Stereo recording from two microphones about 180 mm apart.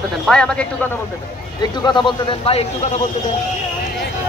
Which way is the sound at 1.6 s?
25° left (ahead or behind).